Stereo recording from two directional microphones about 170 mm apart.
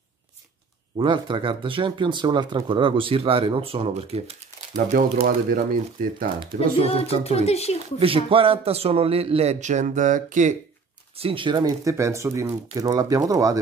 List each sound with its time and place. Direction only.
0.9 s speech: 30° right (ahead or behind)
5.2 s speech: 55° right (ahead or behind)
6.8 s speech: 35° left (ahead or behind)
8.0 s speech: 30° right (ahead or behind); by 10.5 s 50° right (ahead or behind)
11.1 s speech: 30° right (ahead or behind)